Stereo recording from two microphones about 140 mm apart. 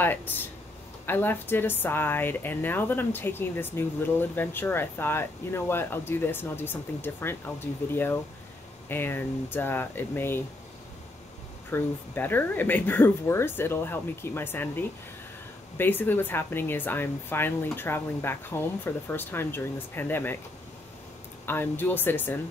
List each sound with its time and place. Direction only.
0.0 s speech: 15° left (ahead or behind)
11.7 s speech: 15° left (ahead or behind)
21.5 s speech: 15° left (ahead or behind)